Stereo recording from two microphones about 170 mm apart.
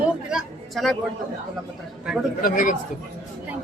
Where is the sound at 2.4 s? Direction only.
55° left (ahead or behind).